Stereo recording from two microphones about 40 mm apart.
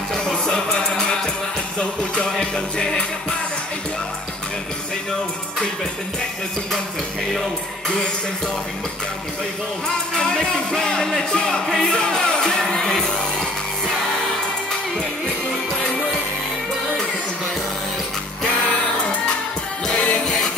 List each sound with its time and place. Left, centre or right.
0.1 s music: centre
10.1 s music: centre
19.9 s music: left